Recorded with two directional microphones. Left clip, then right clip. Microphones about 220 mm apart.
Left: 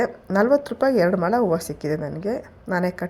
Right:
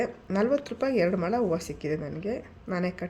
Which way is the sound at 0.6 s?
20° left (ahead or behind).